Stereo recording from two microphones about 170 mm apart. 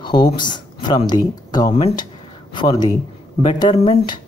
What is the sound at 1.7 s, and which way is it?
Speech, 35° left (ahead or behind).